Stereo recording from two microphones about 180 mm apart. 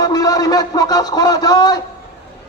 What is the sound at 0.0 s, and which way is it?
A man's voice, 20° left (ahead or behind).